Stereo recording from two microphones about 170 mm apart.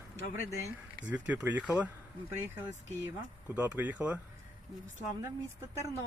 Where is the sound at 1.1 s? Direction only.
10° right (ahead or behind).